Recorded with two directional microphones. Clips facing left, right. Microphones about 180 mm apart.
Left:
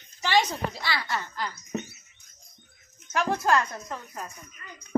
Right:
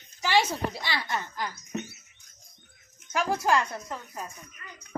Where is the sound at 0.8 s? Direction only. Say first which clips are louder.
Left 1 dB; 20° right (ahead or behind).